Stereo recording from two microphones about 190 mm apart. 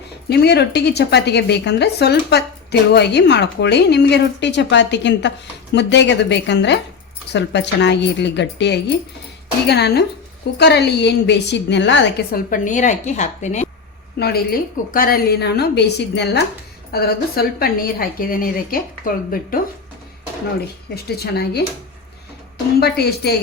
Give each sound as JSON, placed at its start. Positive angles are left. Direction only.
{"t": 0.3, "sound": "speech", "side_deg": 60}
{"t": 12.5, "sound": "a woman's voice", "side_deg": 40}
{"t": 14.2, "sound": "a woman's voice", "side_deg": 55}
{"t": 20.9, "sound": "speech", "side_deg": 60}
{"t": 22.8, "sound": "speech", "side_deg": 60}